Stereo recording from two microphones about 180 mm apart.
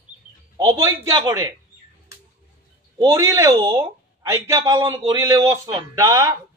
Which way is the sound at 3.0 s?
20° right (ahead or behind).